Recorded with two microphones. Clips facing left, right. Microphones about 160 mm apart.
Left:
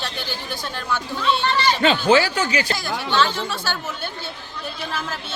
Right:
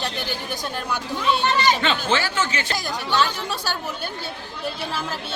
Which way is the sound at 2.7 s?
40° right (ahead or behind).